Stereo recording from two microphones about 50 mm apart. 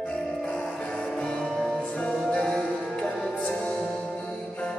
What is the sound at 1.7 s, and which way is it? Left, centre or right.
Music, centre.